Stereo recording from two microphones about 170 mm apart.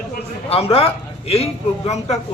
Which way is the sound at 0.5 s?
35° left (ahead or behind).